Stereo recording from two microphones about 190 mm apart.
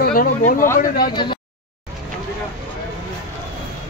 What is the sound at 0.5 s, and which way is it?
Speech, 15° left (ahead or behind).